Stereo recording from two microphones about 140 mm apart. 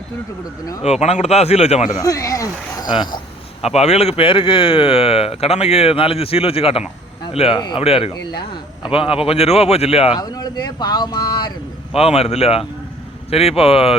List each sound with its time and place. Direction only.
0.9 s speech: 50° left (ahead or behind)
2.0 s speech: 25° left (ahead or behind)
3.6 s speech: 50° left (ahead or behind)
10.2 s speech: 30° left (ahead or behind)
11.9 s speech: 45° left (ahead or behind)